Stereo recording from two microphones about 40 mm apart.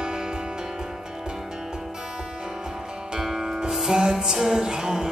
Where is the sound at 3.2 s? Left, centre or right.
Centre.